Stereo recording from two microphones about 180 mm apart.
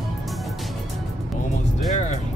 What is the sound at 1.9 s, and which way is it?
Music, 45° left (ahead or behind).